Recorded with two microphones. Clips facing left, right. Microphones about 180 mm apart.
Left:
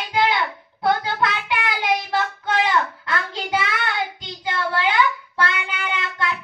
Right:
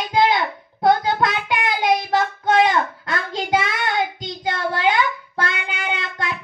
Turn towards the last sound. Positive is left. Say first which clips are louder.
# even
turn(degrees=-45)  # may be behind; listen again after turning